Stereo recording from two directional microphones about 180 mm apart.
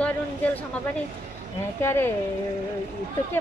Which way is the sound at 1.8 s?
15° left (ahead or behind).